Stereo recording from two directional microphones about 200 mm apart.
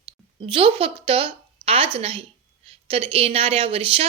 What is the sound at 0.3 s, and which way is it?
A woman's voice, 25° right (ahead or behind).